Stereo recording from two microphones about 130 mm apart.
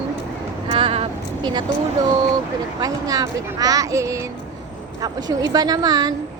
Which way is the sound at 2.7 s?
30° right (ahead or behind).